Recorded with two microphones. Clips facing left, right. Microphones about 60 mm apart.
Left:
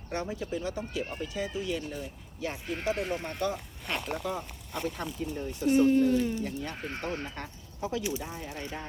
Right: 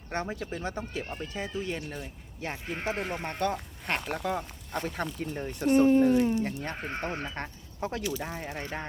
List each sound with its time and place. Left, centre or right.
0.1 s speech: right
3.2 s speech: right
5.8 s speech: right
6.4 s speech: right
6.7 s speech: right
7.3 s speech: right